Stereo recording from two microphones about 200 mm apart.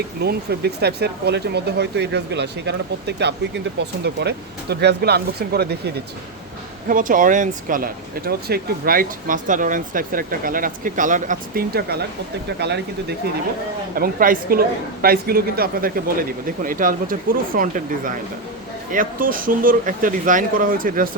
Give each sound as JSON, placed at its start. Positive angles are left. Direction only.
{"t": 0.2, "sound": "speech", "side_deg": -55}
{"t": 13.9, "sound": "speech", "side_deg": -45}